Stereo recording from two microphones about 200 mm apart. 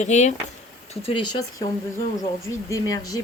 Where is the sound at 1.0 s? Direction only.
25° left (ahead or behind).